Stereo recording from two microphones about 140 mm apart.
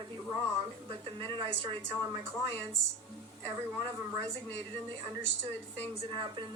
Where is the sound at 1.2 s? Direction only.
35° right (ahead or behind).